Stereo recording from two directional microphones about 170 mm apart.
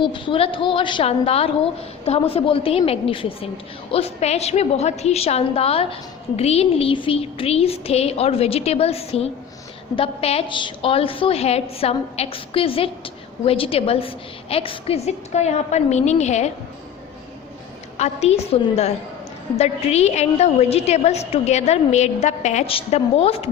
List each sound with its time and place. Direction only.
0.0 s a woman's voice: 30° left (ahead or behind)
17.9 s a woman's voice: 40° left (ahead or behind)